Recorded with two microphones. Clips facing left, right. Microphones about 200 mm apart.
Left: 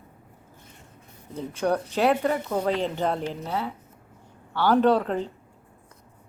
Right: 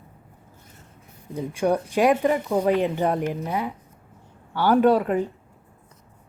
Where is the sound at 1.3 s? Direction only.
10° right (ahead or behind).